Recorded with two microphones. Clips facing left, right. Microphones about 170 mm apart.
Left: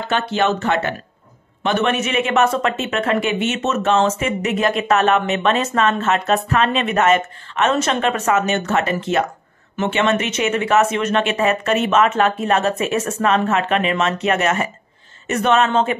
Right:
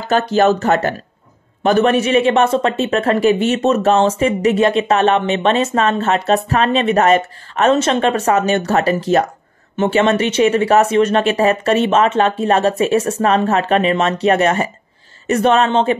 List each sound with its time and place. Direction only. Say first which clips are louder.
0.1 s speech: right 6 dB; 40° right (ahead or behind)